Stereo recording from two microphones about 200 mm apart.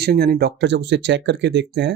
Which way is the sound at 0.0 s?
50° right (ahead or behind).